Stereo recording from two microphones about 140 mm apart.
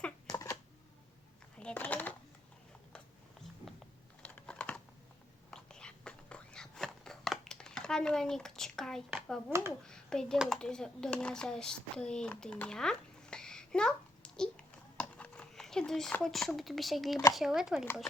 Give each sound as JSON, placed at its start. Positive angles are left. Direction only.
{"t": 0.3, "sound": "shuffling cards", "side_deg": 25}
{"t": 1.5, "sound": "a sound", "side_deg": 10}
{"t": 4.2, "sound": "computer keyboard", "side_deg": 10}
{"t": 5.5, "sound": "whispering", "side_deg": 5}
{"t": 9.5, "sound": "speech", "side_deg": -20}
{"t": 9.8, "sound": "speech", "side_deg": 5}